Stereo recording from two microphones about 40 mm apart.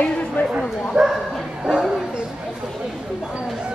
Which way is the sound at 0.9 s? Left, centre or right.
Right.